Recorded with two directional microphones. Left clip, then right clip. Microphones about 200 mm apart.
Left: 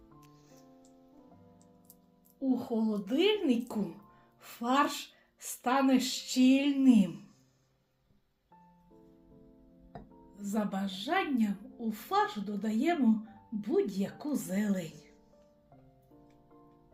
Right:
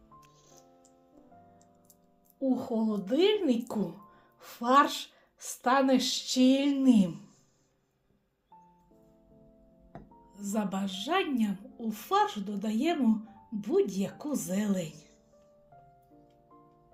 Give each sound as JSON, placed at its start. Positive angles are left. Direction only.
{"t": 2.4, "sound": "a woman's voice", "side_deg": -35}
{"t": 4.4, "sound": "music", "side_deg": -20}
{"t": 5.4, "sound": "a woman's voice", "side_deg": -25}
{"t": 10.3, "sound": "a woman's voice", "side_deg": -25}